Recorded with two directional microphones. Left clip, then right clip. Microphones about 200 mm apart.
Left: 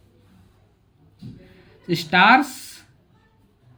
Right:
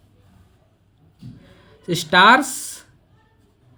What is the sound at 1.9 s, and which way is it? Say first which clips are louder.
Speech: right 2 dB; 50° right (ahead or behind).